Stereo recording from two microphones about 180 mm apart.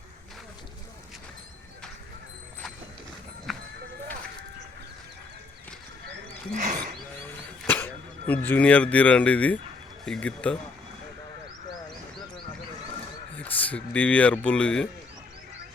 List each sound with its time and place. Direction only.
3.5 s clip-clop: centre (ahead or behind)
6.5 s speech: 45° right (ahead or behind)
7.3 s a sound: 10° left (ahead or behind)
8.3 s speech: 10° left (ahead or behind)
13.3 s speech: 10° left (ahead or behind)